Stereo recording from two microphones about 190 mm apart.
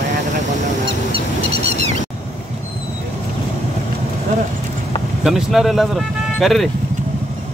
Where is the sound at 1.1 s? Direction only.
35° right (ahead or behind).